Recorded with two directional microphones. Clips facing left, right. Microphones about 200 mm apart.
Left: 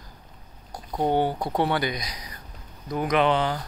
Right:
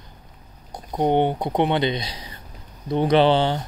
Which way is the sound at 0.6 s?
20° right (ahead or behind).